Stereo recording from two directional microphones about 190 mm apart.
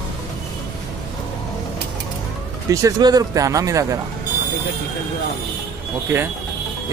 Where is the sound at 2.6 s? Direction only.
20° right (ahead or behind).